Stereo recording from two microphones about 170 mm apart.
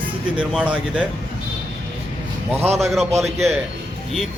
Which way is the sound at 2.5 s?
40° right (ahead or behind).